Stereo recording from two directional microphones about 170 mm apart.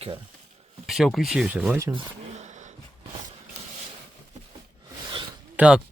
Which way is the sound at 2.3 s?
45° right (ahead or behind).